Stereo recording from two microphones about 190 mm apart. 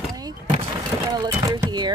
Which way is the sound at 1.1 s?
20° right (ahead or behind).